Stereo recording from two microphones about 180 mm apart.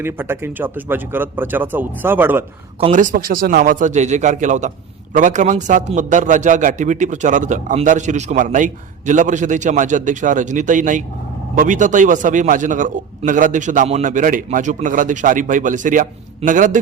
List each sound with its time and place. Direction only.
0.0 s speech: 10° right (ahead or behind)
2.8 s a man's voice: 45° right (ahead or behind)